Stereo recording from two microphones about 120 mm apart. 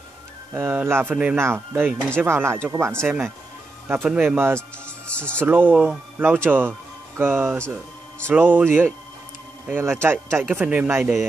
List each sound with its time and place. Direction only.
0.5 s speech: 15° right (ahead or behind)
4.6 s music: 10° left (ahead or behind)
5.4 s speech: 15° right (ahead or behind)